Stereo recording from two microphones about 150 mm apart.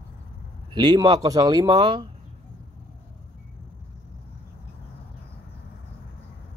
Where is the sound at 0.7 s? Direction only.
30° right (ahead or behind).